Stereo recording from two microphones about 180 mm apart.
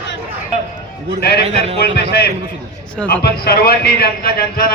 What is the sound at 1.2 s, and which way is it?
Speech, 60° left (ahead or behind).